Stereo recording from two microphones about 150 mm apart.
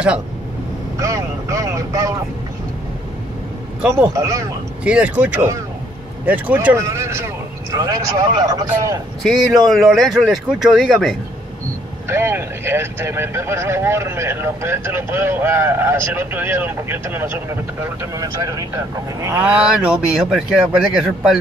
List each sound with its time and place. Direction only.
0.9 s speech: 20° right (ahead or behind)
3.9 s speech: 20° right (ahead or behind)
4.8 s speech: 10° right (ahead or behind); by 9.0 s 25° right (ahead or behind)
9.2 s speech: centre (ahead or behind)
12.1 s speech: 15° right (ahead or behind)
19.2 s speech: 10° right (ahead or behind)